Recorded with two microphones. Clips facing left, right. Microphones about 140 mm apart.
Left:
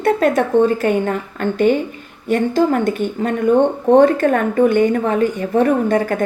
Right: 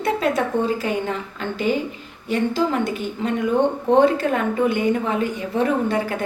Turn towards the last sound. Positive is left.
turn(degrees=50)  # may be behind; listen again after turning